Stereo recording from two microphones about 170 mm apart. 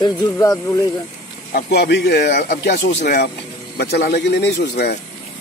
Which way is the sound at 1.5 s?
70° left (ahead or behind).